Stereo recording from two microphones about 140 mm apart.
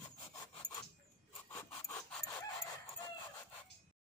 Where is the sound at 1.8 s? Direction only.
25° left (ahead or behind).